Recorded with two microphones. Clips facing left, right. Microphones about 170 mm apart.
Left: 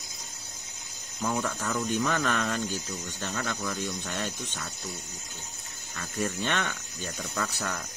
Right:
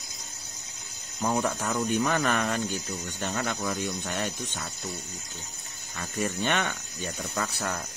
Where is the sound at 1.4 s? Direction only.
20° right (ahead or behind).